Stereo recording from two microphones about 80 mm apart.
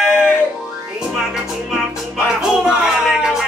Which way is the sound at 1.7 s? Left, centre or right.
Centre.